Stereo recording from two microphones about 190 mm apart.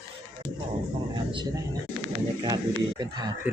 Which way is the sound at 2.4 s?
20° right (ahead or behind).